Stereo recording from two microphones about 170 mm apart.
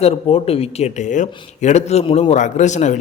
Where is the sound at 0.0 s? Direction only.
35° left (ahead or behind).